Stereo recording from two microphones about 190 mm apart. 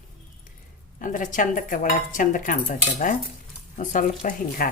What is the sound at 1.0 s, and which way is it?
Speech, 45° left (ahead or behind).